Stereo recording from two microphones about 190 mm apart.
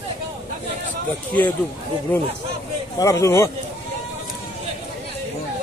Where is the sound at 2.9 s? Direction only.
15° left (ahead or behind).